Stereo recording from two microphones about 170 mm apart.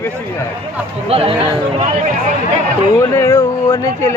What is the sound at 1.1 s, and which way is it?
Speech, 35° right (ahead or behind).